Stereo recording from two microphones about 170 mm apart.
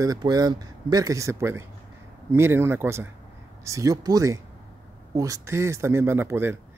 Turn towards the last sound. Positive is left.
turn(degrees=-15)  # may be behind; listen again after turning